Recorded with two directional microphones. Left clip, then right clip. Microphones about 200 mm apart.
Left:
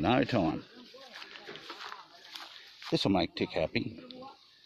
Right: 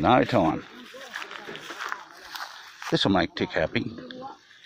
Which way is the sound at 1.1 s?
45° right (ahead or behind).